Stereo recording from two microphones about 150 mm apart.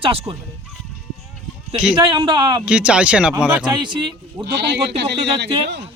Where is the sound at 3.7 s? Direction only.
30° right (ahead or behind).